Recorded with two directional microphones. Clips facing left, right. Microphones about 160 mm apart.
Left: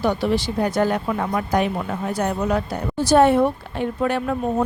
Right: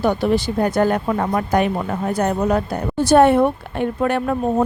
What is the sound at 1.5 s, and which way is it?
A woman's voice, 60° right (ahead or behind).